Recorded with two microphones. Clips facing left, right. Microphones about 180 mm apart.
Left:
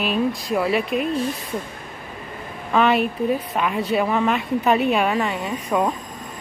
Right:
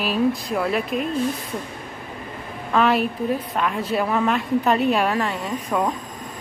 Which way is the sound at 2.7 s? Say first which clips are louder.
Left 1 dB; centre (ahead or behind).